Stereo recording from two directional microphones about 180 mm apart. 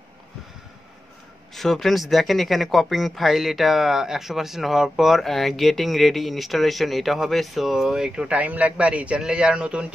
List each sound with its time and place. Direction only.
1.5 s speech: centre (ahead or behind)